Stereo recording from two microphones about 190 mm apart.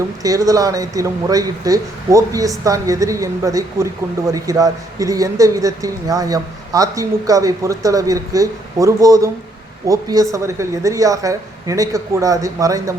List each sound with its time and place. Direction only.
0.2 s speech: 20° right (ahead or behind)